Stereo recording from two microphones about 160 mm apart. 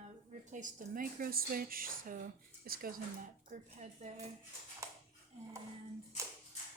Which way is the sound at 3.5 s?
45° right (ahead or behind).